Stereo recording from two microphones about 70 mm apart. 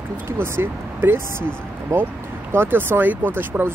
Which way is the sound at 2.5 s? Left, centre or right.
Right.